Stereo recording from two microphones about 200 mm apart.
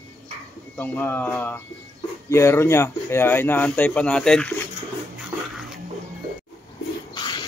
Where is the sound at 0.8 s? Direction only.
10° left (ahead or behind).